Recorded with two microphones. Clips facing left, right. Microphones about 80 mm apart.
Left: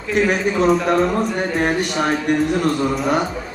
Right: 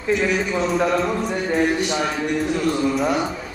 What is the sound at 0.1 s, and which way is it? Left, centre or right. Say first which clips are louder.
Speech: left 2 dB; left.